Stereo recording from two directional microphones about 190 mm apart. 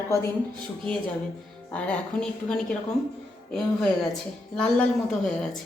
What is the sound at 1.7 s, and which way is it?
A woman's voice, 5° left (ahead or behind).